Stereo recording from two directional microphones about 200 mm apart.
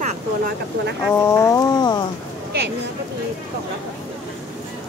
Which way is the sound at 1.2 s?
15° left (ahead or behind).